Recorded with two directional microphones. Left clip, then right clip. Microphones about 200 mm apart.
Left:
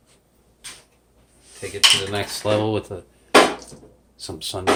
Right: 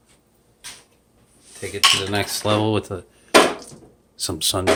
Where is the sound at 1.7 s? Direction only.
30° right (ahead or behind).